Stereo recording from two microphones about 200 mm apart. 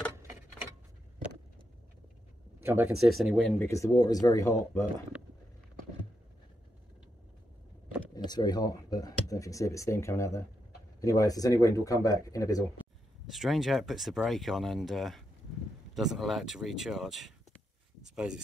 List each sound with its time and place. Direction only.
2.6 s speech: 10° right (ahead or behind); by 4.8 s 15° left (ahead or behind)
8.1 s speech: 20° left (ahead or behind)
13.3 s speech: centre (ahead or behind)